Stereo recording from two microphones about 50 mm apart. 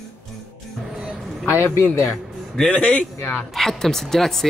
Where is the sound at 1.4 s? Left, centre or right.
Left.